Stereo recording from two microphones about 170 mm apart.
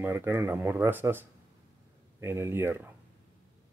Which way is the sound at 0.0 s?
10° right (ahead or behind).